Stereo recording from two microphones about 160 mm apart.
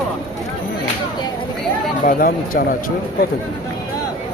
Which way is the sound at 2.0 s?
60° left (ahead or behind).